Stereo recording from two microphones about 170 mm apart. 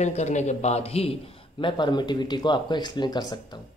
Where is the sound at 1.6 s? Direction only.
25° left (ahead or behind).